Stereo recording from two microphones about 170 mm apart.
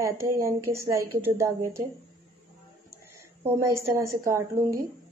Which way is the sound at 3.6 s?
15° right (ahead or behind).